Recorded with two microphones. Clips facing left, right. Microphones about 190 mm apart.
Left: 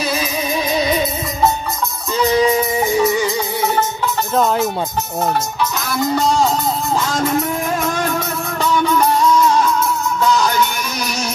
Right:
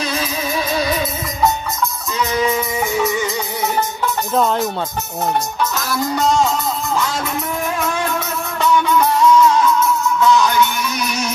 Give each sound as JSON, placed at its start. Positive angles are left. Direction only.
{"t": 0.0, "sound": "music", "side_deg": 10}
{"t": 0.7, "sound": "music", "side_deg": 20}
{"t": 2.1, "sound": "music", "side_deg": 30}
{"t": 4.4, "sound": "speech", "side_deg": 5}
{"t": 9.6, "sound": "music", "side_deg": 35}